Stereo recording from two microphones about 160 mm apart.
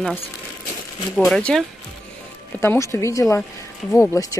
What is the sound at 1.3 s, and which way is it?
Speech, 5° left (ahead or behind).